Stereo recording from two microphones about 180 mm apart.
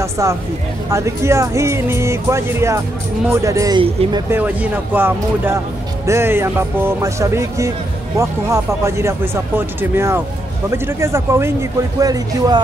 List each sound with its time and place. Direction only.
0.0 s speech: 15° right (ahead or behind)
3.8 s speech: 30° right (ahead or behind)
4.3 s speech: 10° right (ahead or behind)